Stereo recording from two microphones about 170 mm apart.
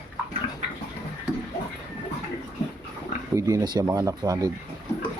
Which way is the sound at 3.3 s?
20° right (ahead or behind).